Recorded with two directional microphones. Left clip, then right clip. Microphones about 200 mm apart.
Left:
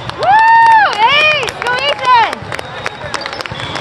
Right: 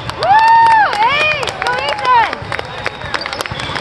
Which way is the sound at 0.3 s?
40° left (ahead or behind).